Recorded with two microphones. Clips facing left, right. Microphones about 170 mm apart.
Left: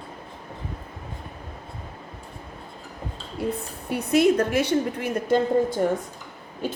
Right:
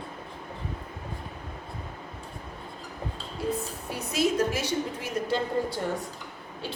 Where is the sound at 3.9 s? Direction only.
60° left (ahead or behind).